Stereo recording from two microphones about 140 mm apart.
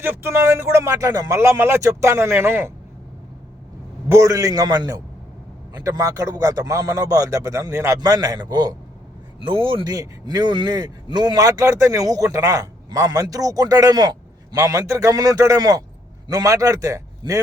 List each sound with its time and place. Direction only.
0.0 s speech: 15° right (ahead or behind)
4.1 s speech: 25° right (ahead or behind)